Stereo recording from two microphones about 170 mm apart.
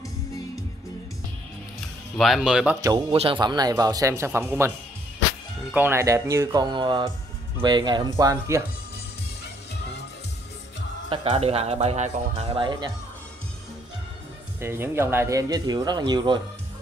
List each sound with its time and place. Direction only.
2.1 s speech: centre (ahead or behind)
3.1 s speech: 35° right (ahead or behind)
11.1 s speech: 35° right (ahead or behind)
14.6 s speech: 15° right (ahead or behind)